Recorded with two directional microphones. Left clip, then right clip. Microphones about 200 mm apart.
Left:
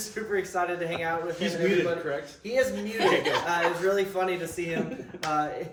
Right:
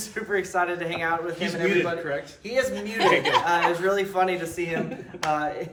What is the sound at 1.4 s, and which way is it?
Speech, 15° left (ahead or behind).